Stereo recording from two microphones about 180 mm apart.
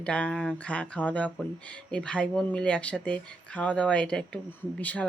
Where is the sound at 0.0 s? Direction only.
5° left (ahead or behind).